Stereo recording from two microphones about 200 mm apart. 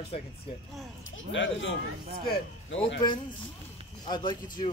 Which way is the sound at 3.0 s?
20° left (ahead or behind).